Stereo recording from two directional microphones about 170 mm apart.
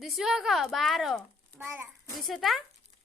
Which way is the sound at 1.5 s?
15° right (ahead or behind).